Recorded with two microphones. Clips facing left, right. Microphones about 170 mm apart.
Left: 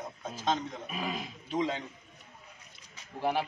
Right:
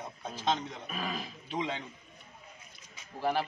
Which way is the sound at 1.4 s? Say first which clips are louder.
Left 4 dB; 40° left (ahead or behind).